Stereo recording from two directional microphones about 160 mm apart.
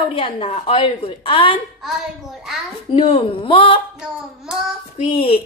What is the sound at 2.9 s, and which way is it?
Speech, 35° left (ahead or behind).